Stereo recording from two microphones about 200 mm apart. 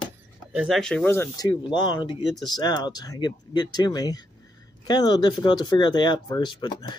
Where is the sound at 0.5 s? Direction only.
5° right (ahead or behind).